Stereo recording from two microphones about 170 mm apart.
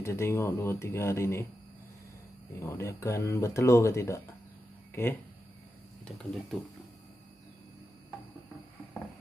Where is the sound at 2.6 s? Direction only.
15° left (ahead or behind).